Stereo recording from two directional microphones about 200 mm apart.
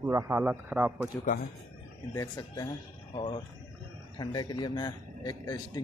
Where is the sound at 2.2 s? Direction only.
15° left (ahead or behind).